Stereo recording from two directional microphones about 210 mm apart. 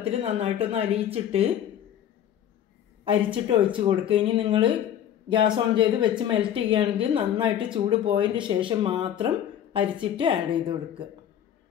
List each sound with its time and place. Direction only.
0.0 s speech: 30° right (ahead or behind)
3.4 s speech: 25° right (ahead or behind)